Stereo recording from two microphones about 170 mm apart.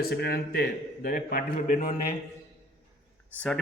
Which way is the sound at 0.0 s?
70° left (ahead or behind).